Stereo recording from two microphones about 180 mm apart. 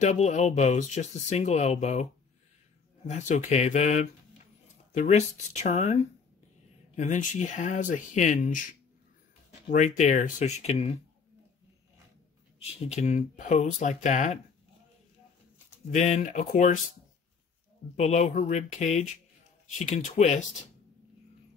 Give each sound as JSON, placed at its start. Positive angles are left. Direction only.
{"t": 0.0, "sound": "speech", "side_deg": 40}
{"t": 3.1, "sound": "speech", "side_deg": 40}
{"t": 7.0, "sound": "speech", "side_deg": 40}
{"t": 9.7, "sound": "speech", "side_deg": 40}
{"t": 12.7, "sound": "speech", "side_deg": 35}
{"t": 15.9, "sound": "speech", "side_deg": 40}
{"t": 17.9, "sound": "speech", "side_deg": 40}